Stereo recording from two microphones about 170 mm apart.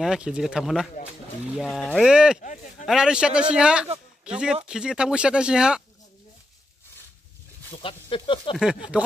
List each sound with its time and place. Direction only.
0.0 s a man's voice: 5° right (ahead or behind)
2.4 s a sound: 50° left (ahead or behind)
2.8 s a man's voice: centre (ahead or behind)
7.7 s speech: 30° left (ahead or behind)